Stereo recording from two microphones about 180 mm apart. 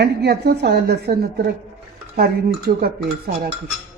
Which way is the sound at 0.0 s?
65° right (ahead or behind).